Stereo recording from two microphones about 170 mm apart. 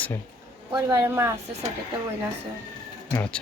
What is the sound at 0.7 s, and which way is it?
Speech, 15° right (ahead or behind).